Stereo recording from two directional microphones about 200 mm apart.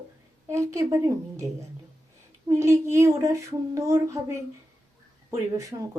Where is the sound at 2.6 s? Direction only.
15° right (ahead or behind).